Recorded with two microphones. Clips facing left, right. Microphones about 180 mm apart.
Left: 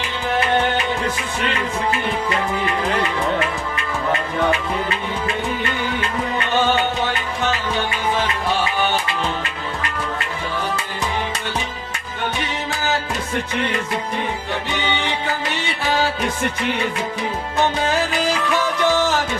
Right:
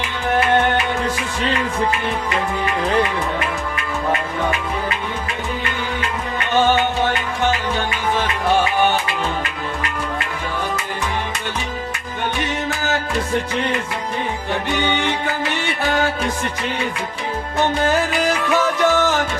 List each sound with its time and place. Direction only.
15.9 s music: 60° right (ahead or behind)
18.9 s music: centre (ahead or behind)